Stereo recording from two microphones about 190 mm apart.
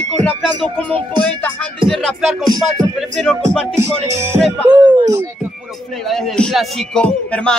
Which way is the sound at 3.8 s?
15° right (ahead or behind).